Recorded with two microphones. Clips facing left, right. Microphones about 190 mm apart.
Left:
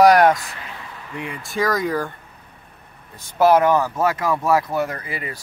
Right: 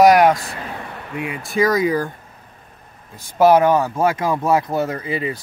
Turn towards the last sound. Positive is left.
turn(degrees=-25)  # may be behind; listen again after turning